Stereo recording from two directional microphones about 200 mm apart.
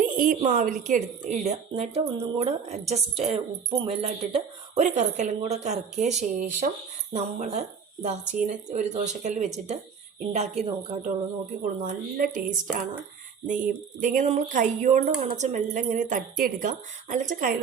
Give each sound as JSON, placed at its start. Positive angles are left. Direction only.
{"t": 0.0, "sound": "speech", "side_deg": -40}
{"t": 14.0, "sound": "speech", "side_deg": -40}